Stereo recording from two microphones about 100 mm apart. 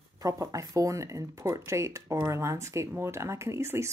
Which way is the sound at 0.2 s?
35° right (ahead or behind).